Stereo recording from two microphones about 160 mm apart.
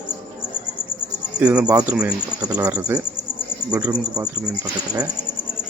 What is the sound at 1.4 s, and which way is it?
Speech, 10° right (ahead or behind).